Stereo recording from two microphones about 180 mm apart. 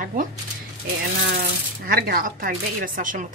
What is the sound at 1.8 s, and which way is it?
A woman's voice, 55° right (ahead or behind).